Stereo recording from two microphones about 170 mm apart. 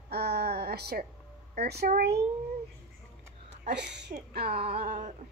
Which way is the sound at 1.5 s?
70° right (ahead or behind).